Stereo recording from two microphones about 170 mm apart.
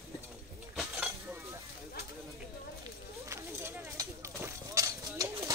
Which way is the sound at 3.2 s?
15° right (ahead or behind).